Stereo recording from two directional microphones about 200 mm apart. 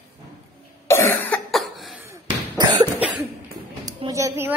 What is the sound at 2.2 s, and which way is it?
Cough, 20° right (ahead or behind).